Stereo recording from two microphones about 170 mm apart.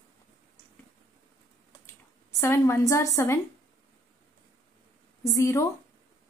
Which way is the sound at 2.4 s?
15° left (ahead or behind).